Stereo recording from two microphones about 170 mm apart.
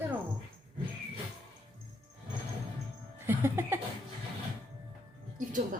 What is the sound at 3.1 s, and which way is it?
Music, 15° right (ahead or behind).